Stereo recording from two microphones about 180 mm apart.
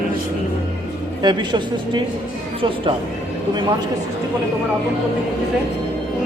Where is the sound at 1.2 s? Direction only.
25° right (ahead or behind).